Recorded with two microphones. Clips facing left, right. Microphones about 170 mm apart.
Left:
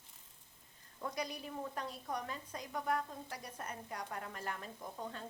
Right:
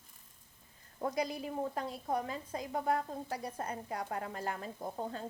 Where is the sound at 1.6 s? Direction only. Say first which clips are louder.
Right 5 dB; 25° right (ahead or behind).